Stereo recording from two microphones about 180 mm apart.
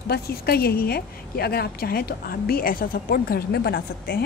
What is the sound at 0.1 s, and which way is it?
A woman's voice, 60° left (ahead or behind).